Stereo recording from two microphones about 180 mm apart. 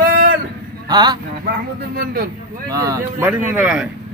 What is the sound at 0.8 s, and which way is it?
Speech, 25° right (ahead or behind).